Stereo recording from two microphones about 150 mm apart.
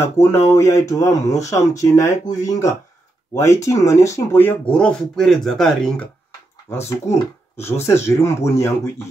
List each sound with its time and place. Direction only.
0.0 s speech: 15° left (ahead or behind)
6.9 s speech: 15° left (ahead or behind)